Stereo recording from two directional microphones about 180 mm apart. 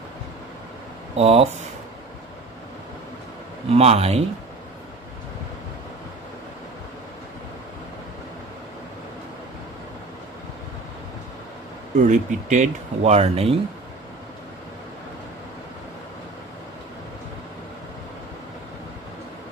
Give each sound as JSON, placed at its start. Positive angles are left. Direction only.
{"t": 1.1, "sound": "speech", "side_deg": -35}
{"t": 3.7, "sound": "speech", "side_deg": -35}
{"t": 12.0, "sound": "speech", "side_deg": -45}